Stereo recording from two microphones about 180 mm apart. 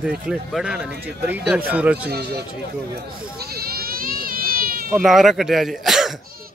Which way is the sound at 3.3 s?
60° right (ahead or behind).